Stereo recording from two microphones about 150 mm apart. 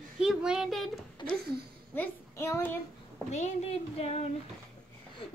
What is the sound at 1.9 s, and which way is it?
Speech, 15° left (ahead or behind).